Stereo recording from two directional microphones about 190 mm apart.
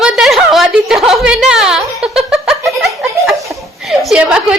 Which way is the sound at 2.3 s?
Centre (ahead or behind).